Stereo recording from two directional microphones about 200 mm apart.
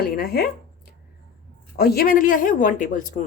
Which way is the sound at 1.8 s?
50° left (ahead or behind).